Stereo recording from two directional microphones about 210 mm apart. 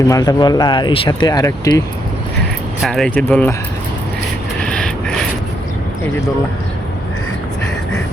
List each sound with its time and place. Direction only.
0.1 s speech: 15° left (ahead or behind)
2.8 s speech: centre (ahead or behind)
4.6 s a sound: 5° left (ahead or behind)